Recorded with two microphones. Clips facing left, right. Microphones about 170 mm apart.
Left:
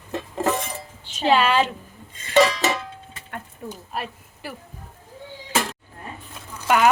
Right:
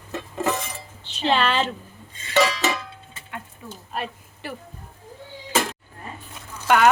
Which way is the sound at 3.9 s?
5° left (ahead or behind).